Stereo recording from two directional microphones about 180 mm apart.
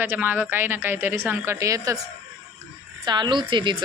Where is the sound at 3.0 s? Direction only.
25° right (ahead or behind).